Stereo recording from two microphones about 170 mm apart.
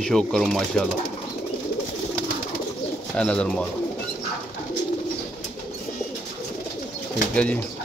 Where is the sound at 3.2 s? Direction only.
5° left (ahead or behind).